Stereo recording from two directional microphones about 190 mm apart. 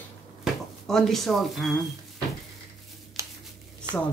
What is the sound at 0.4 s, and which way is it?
Speech, centre (ahead or behind).